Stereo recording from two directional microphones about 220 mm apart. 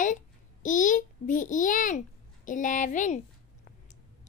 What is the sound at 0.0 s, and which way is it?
A child's voice, 35° left (ahead or behind).